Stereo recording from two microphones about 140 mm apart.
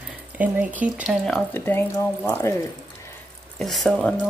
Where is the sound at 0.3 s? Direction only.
10° right (ahead or behind).